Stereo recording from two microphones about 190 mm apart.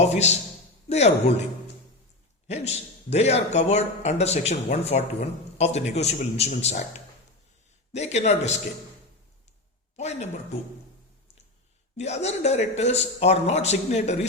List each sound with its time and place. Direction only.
0.0 s a man's voice: 35° left (ahead or behind)
2.5 s a man's voice: 35° left (ahead or behind)
7.9 s a man's voice: 35° left (ahead or behind)
10.0 s a man's voice: 35° left (ahead or behind)
11.9 s a man's voice: 35° left (ahead or behind)